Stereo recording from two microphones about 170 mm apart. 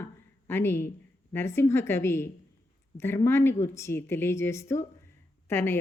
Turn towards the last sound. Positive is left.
turn(degrees=15)  # may be behind; listen again after turning